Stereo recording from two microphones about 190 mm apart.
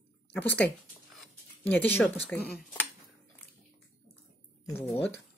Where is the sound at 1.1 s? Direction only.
10° left (ahead or behind).